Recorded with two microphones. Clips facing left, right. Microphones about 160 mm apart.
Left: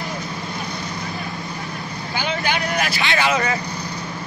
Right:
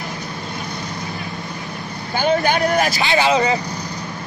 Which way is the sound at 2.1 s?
45° right (ahead or behind).